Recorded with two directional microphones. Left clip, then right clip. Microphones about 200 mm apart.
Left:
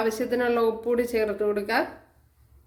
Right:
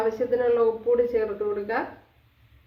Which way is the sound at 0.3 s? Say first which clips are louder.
Right 3 dB; 55° left (ahead or behind).